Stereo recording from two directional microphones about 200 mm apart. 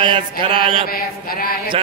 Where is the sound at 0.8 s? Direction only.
45° left (ahead or behind).